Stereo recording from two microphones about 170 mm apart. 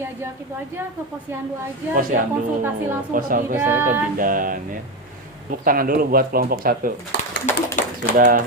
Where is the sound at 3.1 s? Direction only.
50° right (ahead or behind).